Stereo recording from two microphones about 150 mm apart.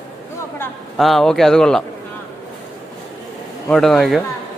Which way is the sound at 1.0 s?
Centre (ahead or behind).